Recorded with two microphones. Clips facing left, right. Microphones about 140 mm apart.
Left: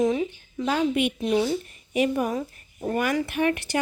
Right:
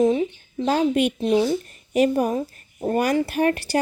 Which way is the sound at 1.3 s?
25° right (ahead or behind).